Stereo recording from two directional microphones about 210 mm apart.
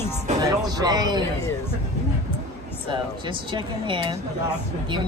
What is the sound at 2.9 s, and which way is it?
Speech, 25° right (ahead or behind).